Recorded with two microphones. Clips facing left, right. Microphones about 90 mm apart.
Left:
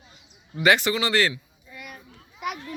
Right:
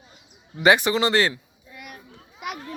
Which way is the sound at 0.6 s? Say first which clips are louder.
Right 3 dB; 20° right (ahead or behind).